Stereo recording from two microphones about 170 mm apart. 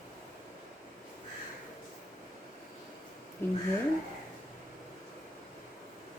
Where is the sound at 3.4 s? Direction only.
15° left (ahead or behind).